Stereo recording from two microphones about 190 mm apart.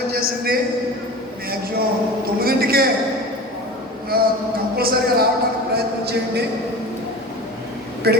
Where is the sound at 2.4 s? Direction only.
55° right (ahead or behind).